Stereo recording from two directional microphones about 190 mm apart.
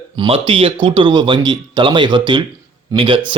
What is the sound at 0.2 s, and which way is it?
Speech, 30° right (ahead or behind).